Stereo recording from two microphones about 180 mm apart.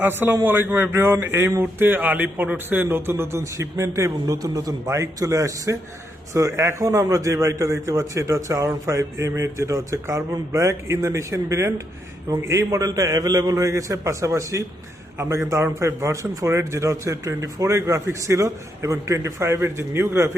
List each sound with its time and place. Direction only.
0.0 s a man's voice: 10° right (ahead or behind)